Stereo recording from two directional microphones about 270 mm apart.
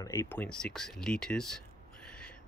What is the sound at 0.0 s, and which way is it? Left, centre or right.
Speech, centre.